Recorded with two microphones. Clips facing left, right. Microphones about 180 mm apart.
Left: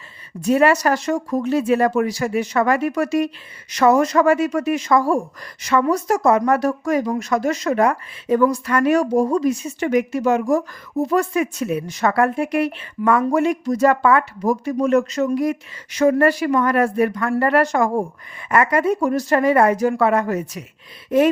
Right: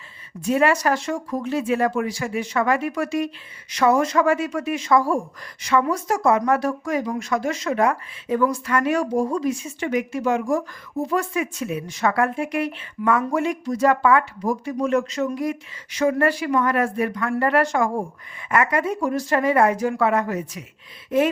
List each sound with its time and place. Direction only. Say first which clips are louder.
0.4 s speech: left 3 dB; 40° left (ahead or behind)